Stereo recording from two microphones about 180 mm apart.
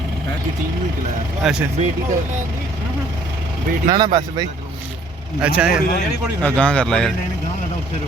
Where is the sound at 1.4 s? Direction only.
Centre (ahead or behind).